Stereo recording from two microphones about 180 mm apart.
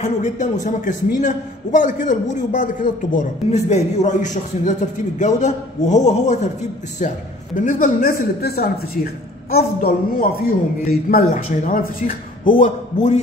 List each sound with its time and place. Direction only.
0.0 s a man's voice: 40° left (ahead or behind)